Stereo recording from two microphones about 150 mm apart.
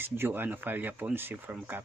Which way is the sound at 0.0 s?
15° right (ahead or behind).